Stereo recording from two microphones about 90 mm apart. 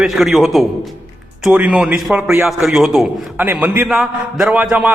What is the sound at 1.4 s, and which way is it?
A man's voice, 15° right (ahead or behind).